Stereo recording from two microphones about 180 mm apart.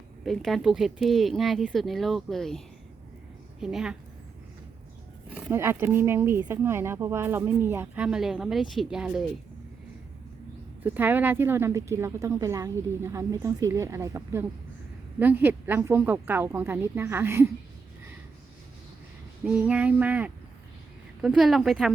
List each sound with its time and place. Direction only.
0.3 s speech: centre (ahead or behind)
3.6 s speech: centre (ahead or behind)
5.3 s speech: 15° right (ahead or behind)
10.8 s speech: 10° right (ahead or behind)
19.5 s speech: 10° right (ahead or behind)